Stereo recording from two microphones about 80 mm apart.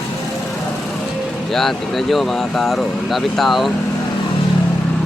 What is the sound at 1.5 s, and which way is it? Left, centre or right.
Speech, centre.